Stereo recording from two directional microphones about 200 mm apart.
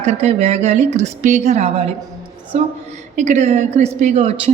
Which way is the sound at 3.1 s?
35° right (ahead or behind).